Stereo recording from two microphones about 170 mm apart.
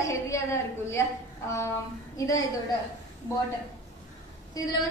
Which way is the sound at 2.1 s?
20° left (ahead or behind).